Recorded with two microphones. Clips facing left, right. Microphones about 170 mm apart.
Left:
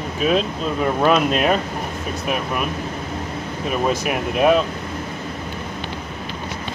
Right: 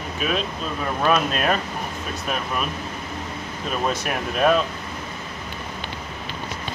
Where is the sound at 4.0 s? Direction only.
10° left (ahead or behind).